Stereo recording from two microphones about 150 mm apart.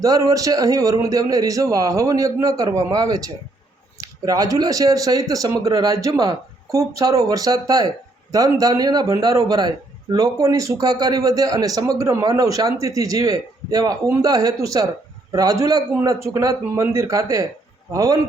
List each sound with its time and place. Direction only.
0.0 s a man's voice: 25° right (ahead or behind)